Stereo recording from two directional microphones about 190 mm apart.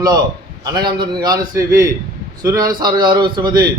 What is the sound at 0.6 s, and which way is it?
A man's voice, 20° right (ahead or behind).